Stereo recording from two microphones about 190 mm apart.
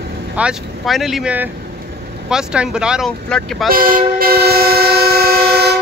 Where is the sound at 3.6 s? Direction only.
50° right (ahead or behind).